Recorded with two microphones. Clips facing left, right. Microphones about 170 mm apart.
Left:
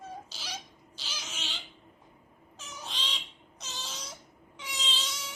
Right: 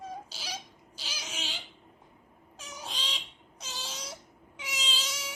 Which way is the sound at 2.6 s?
10° right (ahead or behind).